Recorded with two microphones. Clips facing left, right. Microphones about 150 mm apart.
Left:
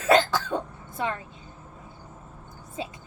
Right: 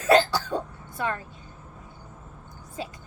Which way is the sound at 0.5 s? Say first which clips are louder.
Even; 20° left (ahead or behind).